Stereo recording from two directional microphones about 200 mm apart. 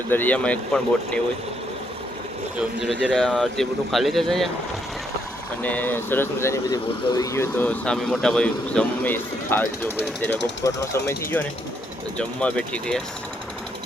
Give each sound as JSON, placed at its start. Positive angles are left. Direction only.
{"t": 0.1, "sound": "speech", "side_deg": 10}
{"t": 2.6, "sound": "speech", "side_deg": -5}
{"t": 5.6, "sound": "speech", "side_deg": 10}